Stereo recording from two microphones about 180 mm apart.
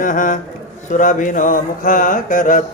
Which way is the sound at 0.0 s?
45° left (ahead or behind).